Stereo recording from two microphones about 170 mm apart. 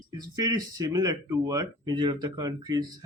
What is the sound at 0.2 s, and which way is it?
Speech, 25° right (ahead or behind).